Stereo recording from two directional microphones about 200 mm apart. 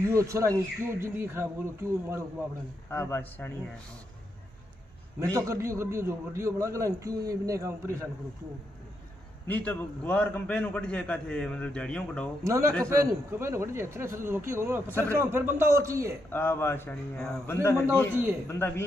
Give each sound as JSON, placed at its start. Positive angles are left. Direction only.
{"t": 0.0, "sound": "a man's voice", "side_deg": -15}
{"t": 2.9, "sound": "a man's voice", "side_deg": 10}
{"t": 5.2, "sound": "a man's voice", "side_deg": -15}
{"t": 9.5, "sound": "a man's voice", "side_deg": 5}
{"t": 12.4, "sound": "a man's voice", "side_deg": -15}
{"t": 16.3, "sound": "a man's voice", "side_deg": 10}
{"t": 18.1, "sound": "a man's voice", "side_deg": -10}
{"t": 18.5, "sound": "a man's voice", "side_deg": 10}